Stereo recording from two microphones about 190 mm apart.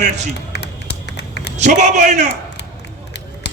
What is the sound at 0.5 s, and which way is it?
Typing, 60° left (ahead or behind).